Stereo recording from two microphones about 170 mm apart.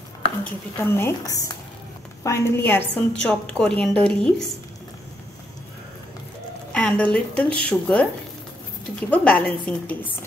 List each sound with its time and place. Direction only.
0.4 s a woman's voice: 15° left (ahead or behind)
6.7 s a woman's voice: 5° left (ahead or behind)
9.1 s a woman's voice: 5° left (ahead or behind)